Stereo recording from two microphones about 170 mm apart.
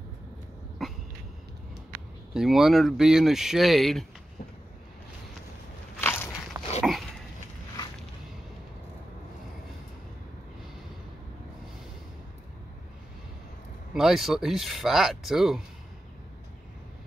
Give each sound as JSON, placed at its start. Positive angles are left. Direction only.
{"t": 0.8, "sound": "a sound", "side_deg": 0}
{"t": 2.3, "sound": "speech", "side_deg": 0}
{"t": 5.9, "sound": "biting", "side_deg": 15}
{"t": 6.5, "sound": "dog", "side_deg": -20}
{"t": 13.9, "sound": "speech", "side_deg": 0}